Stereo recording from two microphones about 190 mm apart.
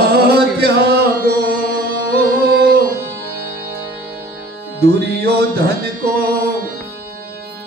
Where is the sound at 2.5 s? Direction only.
55° right (ahead or behind).